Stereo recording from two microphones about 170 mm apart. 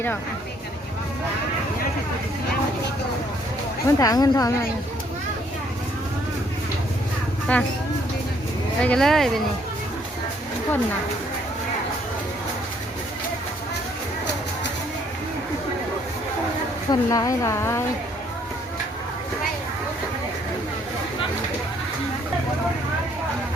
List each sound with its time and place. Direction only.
3.8 s a woman's voice: 20° left (ahead or behind)
7.5 s speech: 10° left (ahead or behind)
8.8 s speech: 5° left (ahead or behind)
16.9 s a woman's voice: 20° left (ahead or behind)